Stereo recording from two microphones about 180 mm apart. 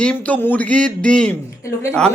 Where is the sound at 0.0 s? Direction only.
5° left (ahead or behind).